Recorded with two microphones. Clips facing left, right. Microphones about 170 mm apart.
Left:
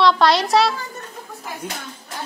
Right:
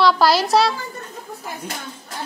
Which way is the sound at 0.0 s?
5° right (ahead or behind).